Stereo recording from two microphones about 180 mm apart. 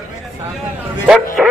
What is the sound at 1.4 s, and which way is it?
Speech, centre (ahead or behind).